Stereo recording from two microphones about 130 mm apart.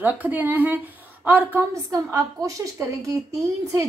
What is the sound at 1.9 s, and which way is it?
A woman's voice, 25° right (ahead or behind).